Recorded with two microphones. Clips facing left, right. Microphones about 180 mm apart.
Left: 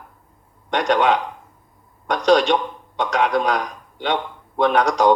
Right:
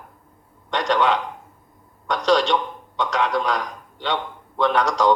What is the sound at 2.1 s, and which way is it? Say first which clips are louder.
Speech: left 3 dB; 15° left (ahead or behind).